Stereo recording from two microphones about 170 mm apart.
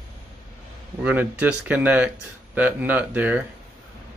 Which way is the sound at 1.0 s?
10° right (ahead or behind).